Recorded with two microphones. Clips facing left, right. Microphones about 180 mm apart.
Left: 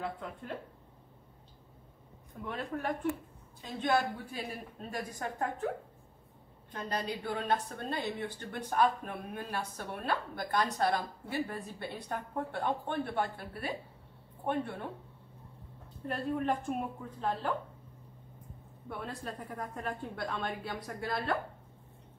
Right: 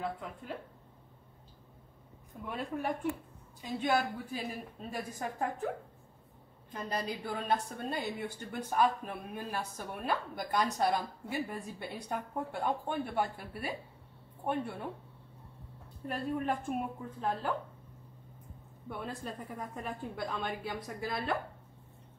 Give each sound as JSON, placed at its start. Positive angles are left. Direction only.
{"t": 0.0, "sound": "a woman's voice", "side_deg": 0}
{"t": 2.4, "sound": "a woman's voice", "side_deg": -10}
{"t": 6.7, "sound": "a woman's voice", "side_deg": -5}
{"t": 16.1, "sound": "a woman's voice", "side_deg": -5}
{"t": 18.9, "sound": "a woman's voice", "side_deg": 0}